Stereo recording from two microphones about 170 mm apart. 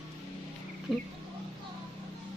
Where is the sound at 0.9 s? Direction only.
Centre (ahead or behind).